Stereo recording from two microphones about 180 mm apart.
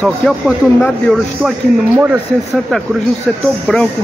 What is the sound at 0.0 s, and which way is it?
Speech, 5° left (ahead or behind).